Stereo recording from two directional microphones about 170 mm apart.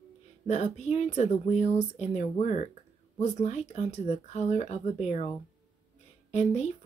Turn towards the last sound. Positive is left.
turn(degrees=40)  # may be behind; listen again after turning